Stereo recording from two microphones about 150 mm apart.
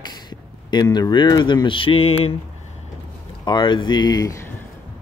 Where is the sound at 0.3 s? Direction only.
30° left (ahead or behind).